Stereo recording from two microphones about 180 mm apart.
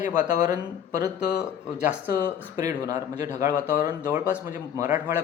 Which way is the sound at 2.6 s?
20° right (ahead or behind).